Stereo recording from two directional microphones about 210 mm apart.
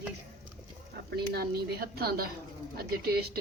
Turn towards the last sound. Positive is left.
turn(degrees=-50)  # may be behind; listen again after turning